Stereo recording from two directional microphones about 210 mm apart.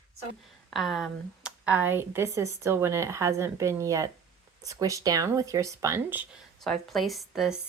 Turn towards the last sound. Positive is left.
turn(degrees=0)  # may be behind; listen again after turning